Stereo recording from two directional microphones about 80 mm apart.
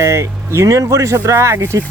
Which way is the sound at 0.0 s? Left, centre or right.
Right.